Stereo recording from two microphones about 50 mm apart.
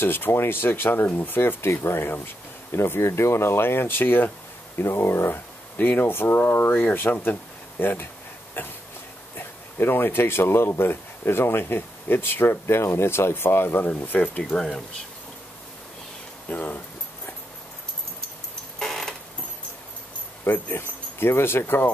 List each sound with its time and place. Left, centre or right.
0.0 s speech: left
4.7 s speech: left
5.3 s speech: left
13.8 s speech: left
16.4 s speech: left
18.8 s a sound: centre
20.4 s speech: left